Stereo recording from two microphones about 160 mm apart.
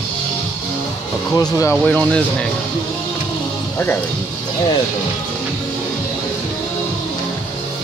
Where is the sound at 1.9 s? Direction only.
10° left (ahead or behind).